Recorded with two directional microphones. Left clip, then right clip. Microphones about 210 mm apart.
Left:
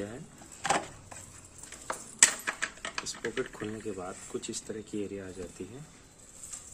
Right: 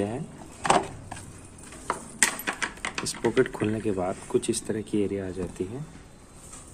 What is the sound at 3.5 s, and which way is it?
Speech, 20° right (ahead or behind).